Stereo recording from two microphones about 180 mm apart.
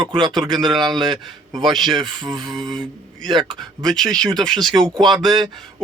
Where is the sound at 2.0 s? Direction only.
25° right (ahead or behind).